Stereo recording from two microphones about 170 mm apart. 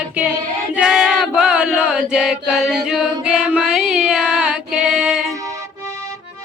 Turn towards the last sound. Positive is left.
turn(degrees=-5)  # may be behind; listen again after turning